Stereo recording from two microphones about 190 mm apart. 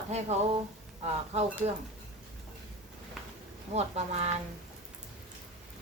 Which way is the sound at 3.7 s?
35° right (ahead or behind).